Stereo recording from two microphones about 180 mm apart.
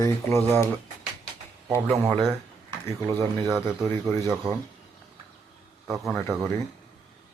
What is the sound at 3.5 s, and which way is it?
Speech, centre (ahead or behind).